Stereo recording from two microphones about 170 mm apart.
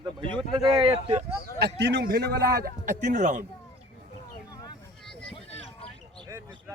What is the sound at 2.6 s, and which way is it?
Speech, 45° right (ahead or behind).